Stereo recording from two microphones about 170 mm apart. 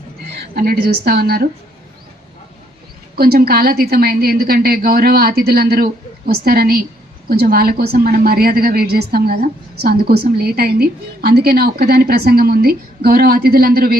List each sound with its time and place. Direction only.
0.5 s a woman's voice: 60° right (ahead or behind)
3.2 s a woman's voice: 60° right (ahead or behind)